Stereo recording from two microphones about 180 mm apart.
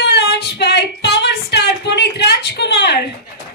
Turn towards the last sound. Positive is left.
turn(degrees=70)  # may be behind; listen again after turning